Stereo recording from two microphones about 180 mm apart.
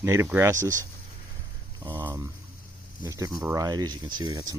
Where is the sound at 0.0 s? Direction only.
15° right (ahead or behind).